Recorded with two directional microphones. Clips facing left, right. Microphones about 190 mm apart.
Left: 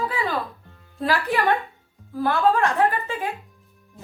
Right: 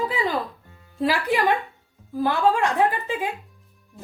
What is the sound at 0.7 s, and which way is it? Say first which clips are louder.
Music: even; centre (ahead or behind).